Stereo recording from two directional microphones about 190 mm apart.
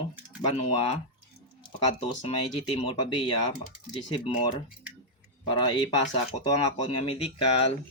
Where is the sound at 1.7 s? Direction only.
25° left (ahead or behind).